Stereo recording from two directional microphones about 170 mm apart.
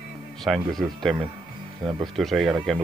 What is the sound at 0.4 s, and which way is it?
Speech, centre (ahead or behind).